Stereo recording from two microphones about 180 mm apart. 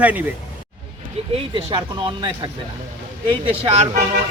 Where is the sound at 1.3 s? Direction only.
30° right (ahead or behind).